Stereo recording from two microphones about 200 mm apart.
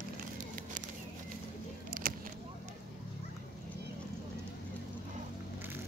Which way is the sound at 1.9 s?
45° right (ahead or behind).